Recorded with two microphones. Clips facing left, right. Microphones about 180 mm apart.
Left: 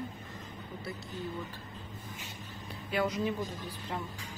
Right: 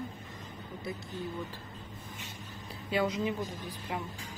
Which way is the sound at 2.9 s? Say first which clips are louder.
Right 1 dB; 25° right (ahead or behind).